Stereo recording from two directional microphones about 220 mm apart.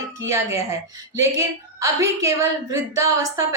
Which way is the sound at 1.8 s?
15° right (ahead or behind).